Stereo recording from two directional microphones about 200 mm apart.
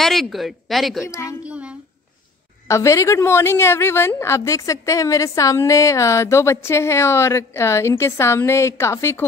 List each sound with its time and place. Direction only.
0.0 s speech: centre (ahead or behind)
1.2 s child singing: 5° right (ahead or behind)
2.7 s a woman's voice: 15° left (ahead or behind)